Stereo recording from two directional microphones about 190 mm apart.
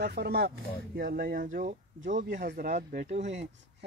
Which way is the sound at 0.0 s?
60° right (ahead or behind).